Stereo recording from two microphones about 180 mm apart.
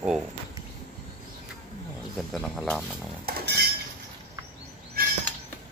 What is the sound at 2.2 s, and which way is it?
Speech, centre (ahead or behind).